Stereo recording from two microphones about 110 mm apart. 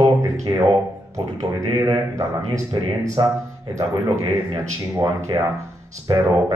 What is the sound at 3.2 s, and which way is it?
Speech, 45° right (ahead or behind).